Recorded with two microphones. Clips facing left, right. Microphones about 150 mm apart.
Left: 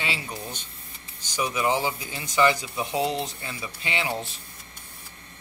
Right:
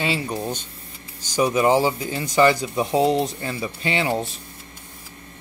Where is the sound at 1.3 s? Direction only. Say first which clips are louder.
Right 7 dB; 40° right (ahead or behind).